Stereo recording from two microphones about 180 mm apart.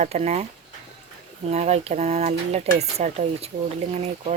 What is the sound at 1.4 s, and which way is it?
Speech, 35° right (ahead or behind).